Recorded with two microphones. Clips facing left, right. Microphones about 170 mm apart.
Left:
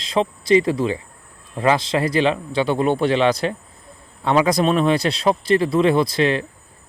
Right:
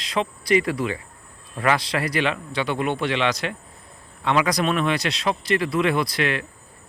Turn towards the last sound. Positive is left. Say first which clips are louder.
# left 6 dB
turn(degrees=30)  # may be behind; listen again after turning